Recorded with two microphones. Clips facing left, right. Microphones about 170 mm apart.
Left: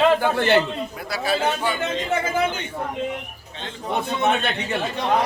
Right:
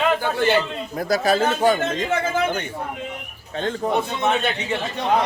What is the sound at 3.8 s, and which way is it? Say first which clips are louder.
Speech: right 3 dB; 55° right (ahead or behind).